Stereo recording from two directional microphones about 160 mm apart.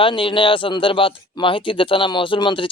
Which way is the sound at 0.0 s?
35° left (ahead or behind).